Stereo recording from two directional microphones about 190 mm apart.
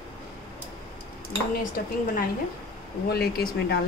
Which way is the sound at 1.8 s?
50° left (ahead or behind).